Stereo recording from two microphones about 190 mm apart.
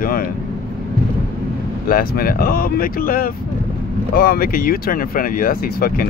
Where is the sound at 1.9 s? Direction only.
50° left (ahead or behind).